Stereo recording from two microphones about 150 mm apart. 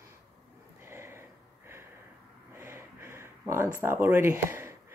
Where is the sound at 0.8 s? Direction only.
15° right (ahead or behind).